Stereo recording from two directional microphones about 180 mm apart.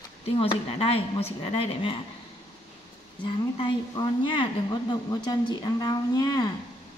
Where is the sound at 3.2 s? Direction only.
25° left (ahead or behind).